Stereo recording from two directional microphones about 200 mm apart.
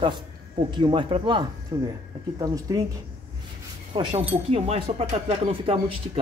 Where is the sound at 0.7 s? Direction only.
25° right (ahead or behind).